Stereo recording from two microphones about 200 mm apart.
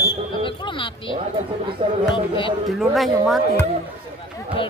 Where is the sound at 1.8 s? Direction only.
30° right (ahead or behind).